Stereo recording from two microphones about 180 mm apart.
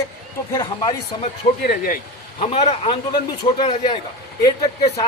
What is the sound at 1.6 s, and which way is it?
Speech, 55° left (ahead or behind).